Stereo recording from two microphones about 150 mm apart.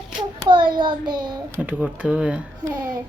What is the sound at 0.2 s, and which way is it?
Hands, 30° right (ahead or behind).